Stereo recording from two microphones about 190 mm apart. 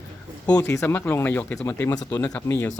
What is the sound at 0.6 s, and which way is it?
Speech, 15° left (ahead or behind).